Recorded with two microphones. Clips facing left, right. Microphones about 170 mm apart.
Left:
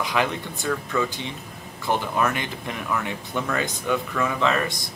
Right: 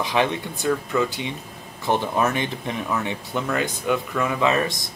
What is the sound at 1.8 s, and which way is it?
Speech, 20° right (ahead or behind).